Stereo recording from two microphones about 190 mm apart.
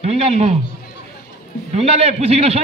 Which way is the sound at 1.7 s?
35° right (ahead or behind).